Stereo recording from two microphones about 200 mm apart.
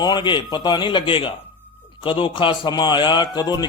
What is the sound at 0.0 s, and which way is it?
Speech, 20° left (ahead or behind).